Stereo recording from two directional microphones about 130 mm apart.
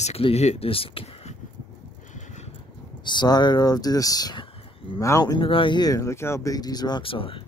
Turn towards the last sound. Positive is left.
turn(degrees=40)  # may be behind; listen again after turning